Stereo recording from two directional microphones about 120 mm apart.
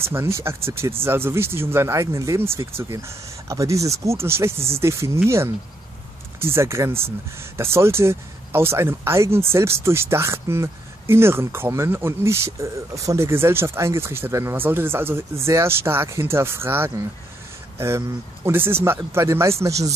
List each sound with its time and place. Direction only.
0.0 s speech: 20° right (ahead or behind)